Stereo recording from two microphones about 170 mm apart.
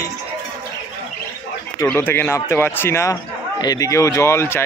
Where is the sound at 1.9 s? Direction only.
15° left (ahead or behind).